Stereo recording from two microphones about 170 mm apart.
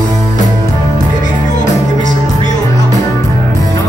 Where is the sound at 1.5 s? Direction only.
45° left (ahead or behind).